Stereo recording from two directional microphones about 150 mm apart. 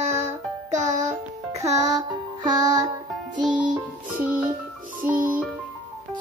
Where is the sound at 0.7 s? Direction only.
50° right (ahead or behind).